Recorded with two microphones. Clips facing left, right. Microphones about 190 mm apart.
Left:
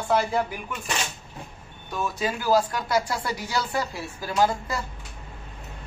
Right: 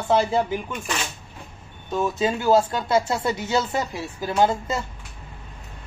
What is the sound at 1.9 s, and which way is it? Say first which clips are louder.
Speech: right 5 dB; 25° right (ahead or behind).